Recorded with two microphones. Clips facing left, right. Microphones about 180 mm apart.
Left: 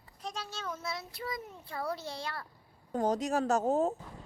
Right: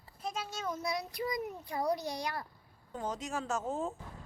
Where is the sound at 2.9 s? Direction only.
35° left (ahead or behind).